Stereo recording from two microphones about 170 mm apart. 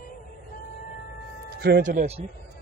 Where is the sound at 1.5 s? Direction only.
65° right (ahead or behind).